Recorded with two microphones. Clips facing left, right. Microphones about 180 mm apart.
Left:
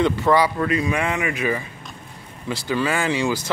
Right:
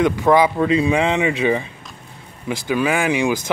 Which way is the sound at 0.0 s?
15° right (ahead or behind).